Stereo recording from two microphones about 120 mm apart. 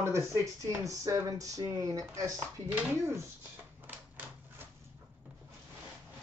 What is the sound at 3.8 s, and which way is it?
Typewriter, 15° right (ahead or behind).